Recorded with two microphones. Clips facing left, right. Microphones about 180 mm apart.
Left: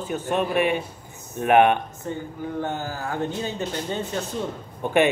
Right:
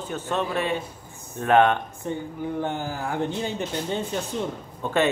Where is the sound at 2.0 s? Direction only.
20° right (ahead or behind).